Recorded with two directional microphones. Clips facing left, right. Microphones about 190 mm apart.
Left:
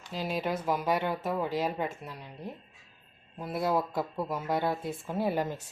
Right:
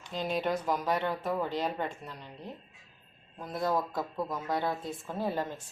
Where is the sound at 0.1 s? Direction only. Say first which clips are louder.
Right 1 dB; 5° left (ahead or behind).